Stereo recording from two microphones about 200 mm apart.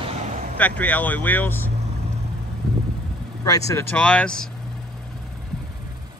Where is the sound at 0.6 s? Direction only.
5° left (ahead or behind).